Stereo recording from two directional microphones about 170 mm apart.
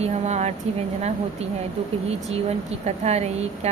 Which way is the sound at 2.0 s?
40° right (ahead or behind).